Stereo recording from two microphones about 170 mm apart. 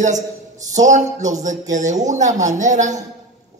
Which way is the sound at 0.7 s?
45° right (ahead or behind).